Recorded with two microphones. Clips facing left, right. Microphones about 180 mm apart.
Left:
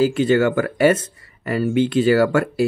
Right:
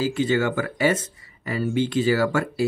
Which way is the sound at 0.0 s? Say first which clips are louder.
Left 6 dB; 60° left (ahead or behind).